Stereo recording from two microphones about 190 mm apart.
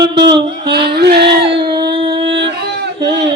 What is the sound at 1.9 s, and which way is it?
Music, 25° right (ahead or behind).